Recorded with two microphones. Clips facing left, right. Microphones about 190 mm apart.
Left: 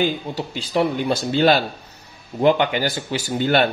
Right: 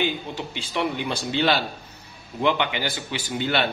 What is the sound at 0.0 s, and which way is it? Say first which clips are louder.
Speech: left 4 dB; 40° left (ahead or behind).